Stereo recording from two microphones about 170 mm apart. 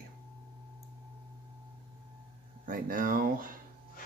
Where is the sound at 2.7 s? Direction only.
55° right (ahead or behind).